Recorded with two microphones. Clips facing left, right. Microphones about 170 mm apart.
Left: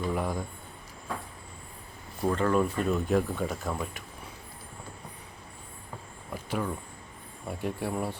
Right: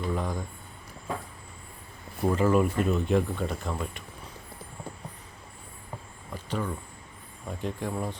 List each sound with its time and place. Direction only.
0.1 s speech: 5° left (ahead or behind)
2.2 s speech: 5° right (ahead or behind)
6.3 s a sound: 10° left (ahead or behind)
7.4 s speech: 10° left (ahead or behind)